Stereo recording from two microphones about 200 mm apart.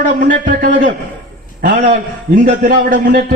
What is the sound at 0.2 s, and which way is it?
A man's voice, 45° right (ahead or behind).